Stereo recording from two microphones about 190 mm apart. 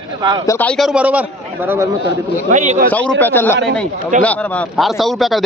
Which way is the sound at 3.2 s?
10° left (ahead or behind).